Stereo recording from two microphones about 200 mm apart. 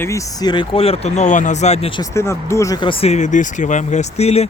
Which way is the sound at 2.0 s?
15° left (ahead or behind).